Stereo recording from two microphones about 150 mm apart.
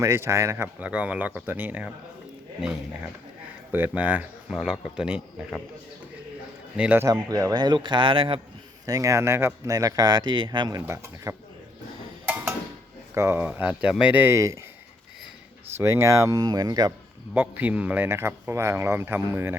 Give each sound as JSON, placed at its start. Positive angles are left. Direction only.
{"t": 0.0, "sound": "speech", "side_deg": -20}
{"t": 3.7, "sound": "speech", "side_deg": -10}
{"t": 6.7, "sound": "speech", "side_deg": -10}
{"t": 8.9, "sound": "speech", "side_deg": -20}
{"t": 12.2, "sound": "a sound", "side_deg": -15}
{"t": 13.1, "sound": "speech", "side_deg": -15}
{"t": 15.8, "sound": "speech", "side_deg": -20}
{"t": 17.3, "sound": "speech", "side_deg": -10}